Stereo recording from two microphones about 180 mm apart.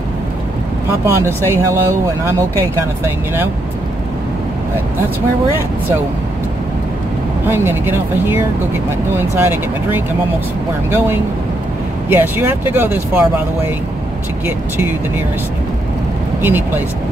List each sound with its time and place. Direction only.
1.0 s speech: 15° right (ahead or behind)
7.4 s speech: 10° right (ahead or behind)
9.4 s speech: 10° right (ahead or behind)
12.1 s speech: 10° right (ahead or behind)
16.4 s speech: 10° right (ahead or behind)